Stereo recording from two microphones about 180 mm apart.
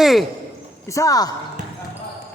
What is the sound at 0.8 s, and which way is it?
Speech, 20° left (ahead or behind).